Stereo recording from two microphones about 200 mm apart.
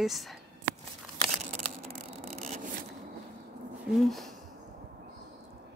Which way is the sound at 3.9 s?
Centre (ahead or behind).